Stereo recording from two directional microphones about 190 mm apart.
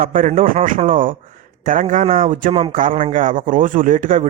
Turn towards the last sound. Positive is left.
turn(degrees=-40)  # may be behind; listen again after turning